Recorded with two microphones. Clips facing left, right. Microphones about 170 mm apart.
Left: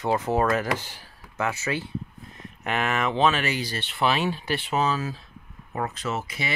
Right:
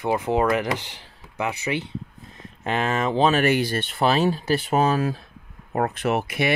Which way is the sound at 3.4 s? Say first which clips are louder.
Right 8 dB; 55° right (ahead or behind).